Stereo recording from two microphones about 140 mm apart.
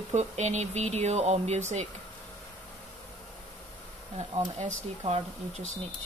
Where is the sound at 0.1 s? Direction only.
55° right (ahead or behind).